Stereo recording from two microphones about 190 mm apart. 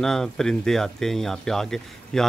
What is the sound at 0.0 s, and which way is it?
Speech, centre (ahead or behind).